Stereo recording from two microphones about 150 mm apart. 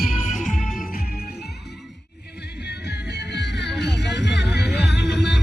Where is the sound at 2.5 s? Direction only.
90° left.